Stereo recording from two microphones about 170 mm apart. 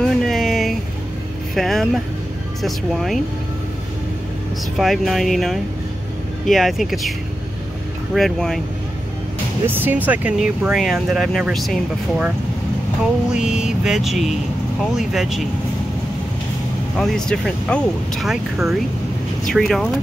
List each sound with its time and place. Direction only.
0.0 s a sound: centre (ahead or behind)
1.5 s speech: centre (ahead or behind)
4.7 s speech: centre (ahead or behind)
9.7 s speech: 10° right (ahead or behind)
16.9 s speech: 5° left (ahead or behind)